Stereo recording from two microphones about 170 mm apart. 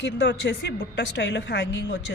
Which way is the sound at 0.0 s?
90° left.